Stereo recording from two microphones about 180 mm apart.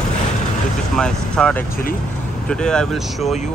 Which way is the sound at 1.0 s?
5° left (ahead or behind).